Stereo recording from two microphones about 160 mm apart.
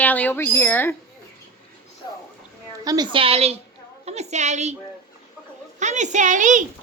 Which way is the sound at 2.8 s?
25° right (ahead or behind).